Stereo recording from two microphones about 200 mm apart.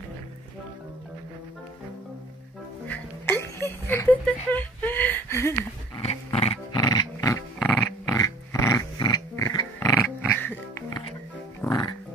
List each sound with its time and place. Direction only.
2.9 s a sound: 10° left (ahead or behind)
5.9 s dog: 30° left (ahead or behind)
7.5 s dog: 5° left (ahead or behind)
8.1 s dog: 15° left (ahead or behind)
11.6 s music: 20° left (ahead or behind)